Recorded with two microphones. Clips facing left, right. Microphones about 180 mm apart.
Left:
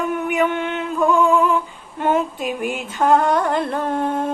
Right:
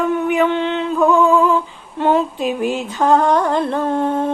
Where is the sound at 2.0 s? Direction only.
30° right (ahead or behind).